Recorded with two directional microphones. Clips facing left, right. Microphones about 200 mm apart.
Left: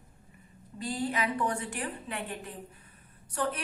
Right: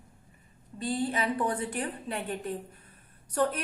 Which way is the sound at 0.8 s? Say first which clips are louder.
Right 2 dB; 30° right (ahead or behind).